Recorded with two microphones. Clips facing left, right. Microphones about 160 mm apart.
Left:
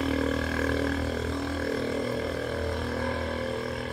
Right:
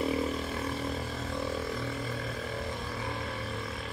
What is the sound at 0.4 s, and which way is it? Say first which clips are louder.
Grunt: left 6 dB; 80° left.